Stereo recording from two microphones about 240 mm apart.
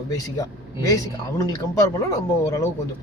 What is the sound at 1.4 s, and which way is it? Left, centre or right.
Speech, centre.